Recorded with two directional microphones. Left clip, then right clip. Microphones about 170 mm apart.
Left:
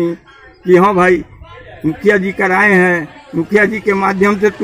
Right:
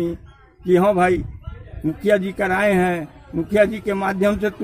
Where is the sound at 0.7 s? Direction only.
30° right (ahead or behind).